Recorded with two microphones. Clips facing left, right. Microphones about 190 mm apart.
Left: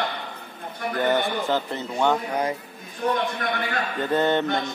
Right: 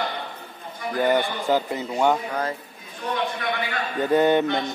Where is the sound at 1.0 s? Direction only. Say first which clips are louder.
Right 1 dB; 10° right (ahead or behind).